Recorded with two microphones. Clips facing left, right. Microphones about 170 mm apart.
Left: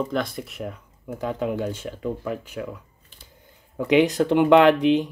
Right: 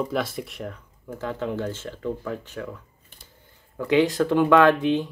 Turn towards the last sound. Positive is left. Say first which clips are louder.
# left 2 dB
turn(degrees=20)  # may be behind; listen again after turning